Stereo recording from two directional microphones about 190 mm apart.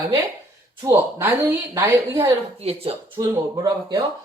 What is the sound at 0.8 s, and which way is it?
A woman's voice, 15° right (ahead or behind).